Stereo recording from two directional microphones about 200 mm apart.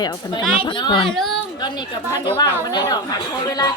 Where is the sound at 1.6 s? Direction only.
20° left (ahead or behind).